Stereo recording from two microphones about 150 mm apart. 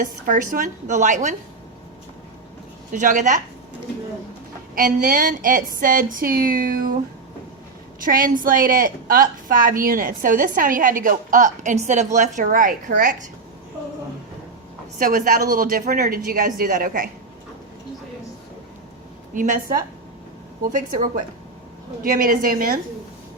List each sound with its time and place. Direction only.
0.0 s a woman's voice: 60° right (ahead or behind)
2.9 s a woman's voice: 55° right (ahead or behind)
4.7 s a woman's voice: 60° right (ahead or behind)
8.0 s a woman's voice: 70° right (ahead or behind)
14.9 s a woman's voice: 65° right (ahead or behind)
19.3 s a woman's voice: 60° right (ahead or behind)